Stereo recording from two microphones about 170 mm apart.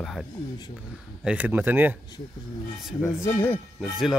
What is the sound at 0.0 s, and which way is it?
Speech, centre (ahead or behind).